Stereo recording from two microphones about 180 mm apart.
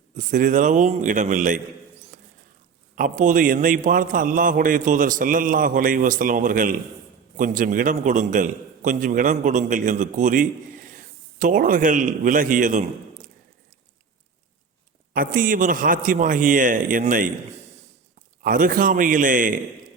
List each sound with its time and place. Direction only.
0.2 s a man's voice: 45° right (ahead or behind)
15.1 s a man's voice: 50° right (ahead or behind)
18.4 s a man's voice: 50° right (ahead or behind)